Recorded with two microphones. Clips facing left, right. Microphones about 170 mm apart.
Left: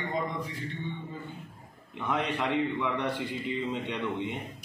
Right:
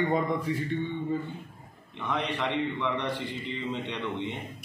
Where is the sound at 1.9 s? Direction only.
5° left (ahead or behind).